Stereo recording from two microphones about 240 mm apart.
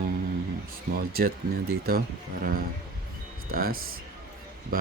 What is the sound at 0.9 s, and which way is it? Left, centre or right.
Speech, right.